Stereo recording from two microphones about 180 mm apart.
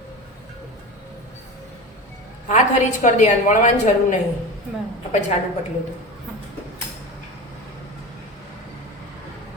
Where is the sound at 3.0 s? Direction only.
45° left (ahead or behind).